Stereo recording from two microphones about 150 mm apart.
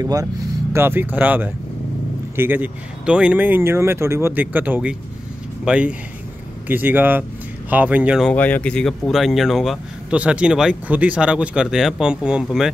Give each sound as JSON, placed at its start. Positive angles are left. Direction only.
{"t": 0.0, "sound": "speech", "side_deg": -25}
{"t": 8.3, "sound": "speech", "side_deg": 10}